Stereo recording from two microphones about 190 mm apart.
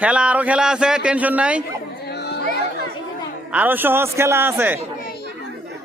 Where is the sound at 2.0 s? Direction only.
60° left (ahead or behind).